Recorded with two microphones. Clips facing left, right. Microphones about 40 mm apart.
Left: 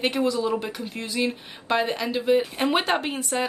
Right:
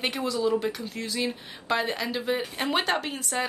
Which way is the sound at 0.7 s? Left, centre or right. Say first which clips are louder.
Left 2 dB; left.